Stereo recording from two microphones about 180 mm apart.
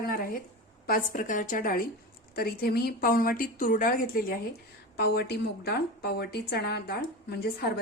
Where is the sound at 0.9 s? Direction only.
50° left (ahead or behind).